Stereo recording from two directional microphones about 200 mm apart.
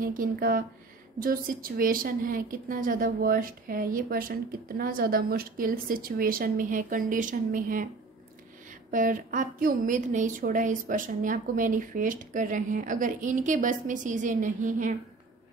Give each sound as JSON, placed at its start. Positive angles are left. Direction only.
{"t": 0.0, "sound": "a woman's voice", "side_deg": -45}
{"t": 8.9, "sound": "a woman's voice", "side_deg": -40}